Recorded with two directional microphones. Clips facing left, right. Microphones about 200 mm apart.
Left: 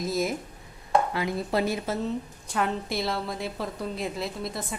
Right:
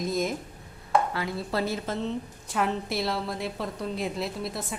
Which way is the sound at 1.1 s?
15° left (ahead or behind).